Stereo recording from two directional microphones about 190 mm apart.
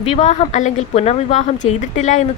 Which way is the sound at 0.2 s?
40° left (ahead or behind).